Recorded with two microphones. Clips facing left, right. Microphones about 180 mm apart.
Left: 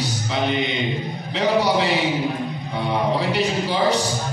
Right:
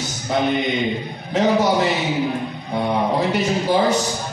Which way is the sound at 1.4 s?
45° right (ahead or behind).